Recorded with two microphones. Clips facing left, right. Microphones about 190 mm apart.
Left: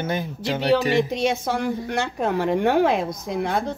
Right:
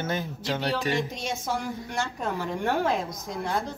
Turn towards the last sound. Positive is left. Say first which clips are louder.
# left 6 dB
turn(degrees=65)  # may be behind; listen again after turning